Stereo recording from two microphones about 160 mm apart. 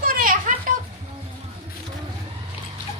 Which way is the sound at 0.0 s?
65° right (ahead or behind).